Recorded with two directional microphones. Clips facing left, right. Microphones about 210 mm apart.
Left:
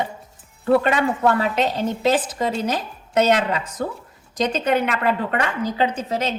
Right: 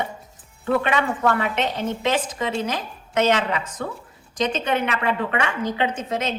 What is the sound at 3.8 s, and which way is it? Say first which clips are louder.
A woman's voice: left 3 dB; 40° left (ahead or behind).